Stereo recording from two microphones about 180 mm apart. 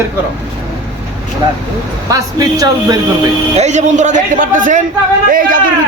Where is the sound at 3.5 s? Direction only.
40° right (ahead or behind).